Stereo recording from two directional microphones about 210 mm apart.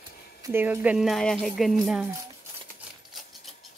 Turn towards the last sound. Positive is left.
turn(degrees=0)  # may be behind; listen again after turning